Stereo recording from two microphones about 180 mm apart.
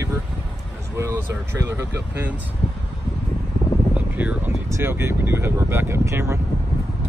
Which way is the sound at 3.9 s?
10° right (ahead or behind).